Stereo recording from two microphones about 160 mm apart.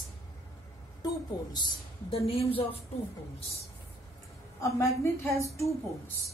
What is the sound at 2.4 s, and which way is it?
Speech, 35° left (ahead or behind).